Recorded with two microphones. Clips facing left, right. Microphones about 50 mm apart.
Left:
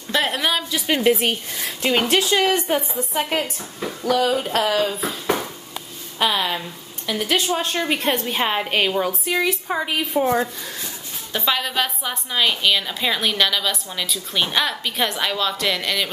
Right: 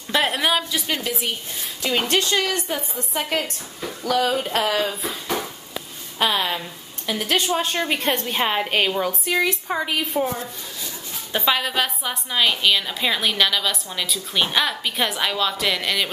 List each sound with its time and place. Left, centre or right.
0.1 s a woman's voice: centre
1.1 s speech: left
2.0 s a woman's voice: centre
2.4 s a woman's voice: left
3.0 s a woman's voice: centre
4.2 s a woman's voice: centre
6.1 s a woman's voice: centre
11.3 s a woman's voice: centre